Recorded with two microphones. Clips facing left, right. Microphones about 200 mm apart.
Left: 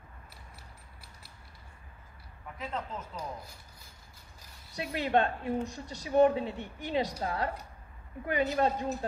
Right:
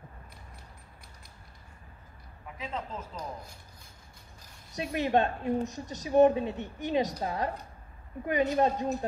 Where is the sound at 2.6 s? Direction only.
10° right (ahead or behind).